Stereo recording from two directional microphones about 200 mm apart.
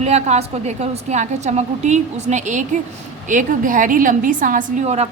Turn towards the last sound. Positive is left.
turn(degrees=-35)  # may be behind; listen again after turning